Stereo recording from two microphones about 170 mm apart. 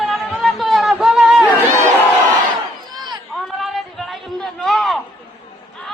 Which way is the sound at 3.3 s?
Centre (ahead or behind).